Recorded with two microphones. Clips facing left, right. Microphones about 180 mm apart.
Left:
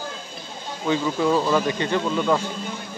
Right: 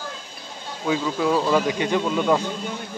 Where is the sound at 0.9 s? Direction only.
5° right (ahead or behind).